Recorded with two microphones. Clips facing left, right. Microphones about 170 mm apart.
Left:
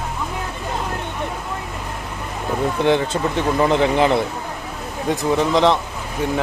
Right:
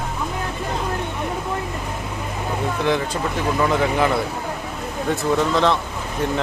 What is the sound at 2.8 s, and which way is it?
Speech, 25° left (ahead or behind).